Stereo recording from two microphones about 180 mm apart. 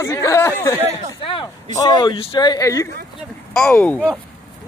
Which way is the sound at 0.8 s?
30° left (ahead or behind).